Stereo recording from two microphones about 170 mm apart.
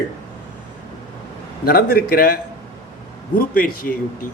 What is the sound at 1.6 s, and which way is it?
A man's voice, 65° left (ahead or behind).